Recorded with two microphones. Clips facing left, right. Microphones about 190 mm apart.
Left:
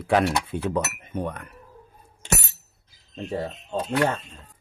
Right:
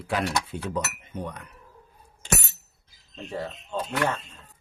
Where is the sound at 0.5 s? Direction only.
55° left (ahead or behind).